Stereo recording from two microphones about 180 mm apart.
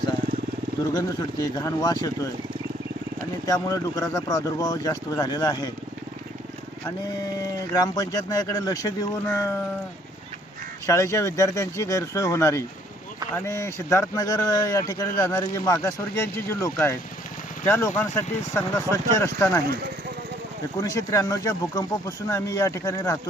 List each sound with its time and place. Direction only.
1.5 s speech: 20° left (ahead or behind)
3.4 s speech: 20° left (ahead or behind)
7.7 s speech: 20° left (ahead or behind)
10.8 s a man's voice: 15° left (ahead or behind)
20.7 s a man's voice: 15° left (ahead or behind)